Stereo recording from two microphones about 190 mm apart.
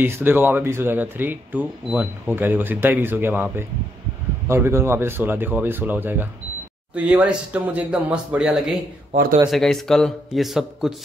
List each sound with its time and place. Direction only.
0.0 s speech: 10° right (ahead or behind)
9.1 s a man's voice: 45° right (ahead or behind)
9.5 s speech: centre (ahead or behind)